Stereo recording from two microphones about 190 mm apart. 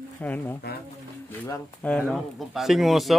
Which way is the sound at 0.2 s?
10° left (ahead or behind).